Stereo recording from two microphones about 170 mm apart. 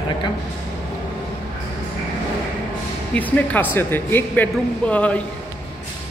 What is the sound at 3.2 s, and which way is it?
Speech, 10° left (ahead or behind).